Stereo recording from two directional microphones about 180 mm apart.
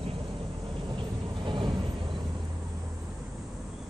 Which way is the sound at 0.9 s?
25° right (ahead or behind).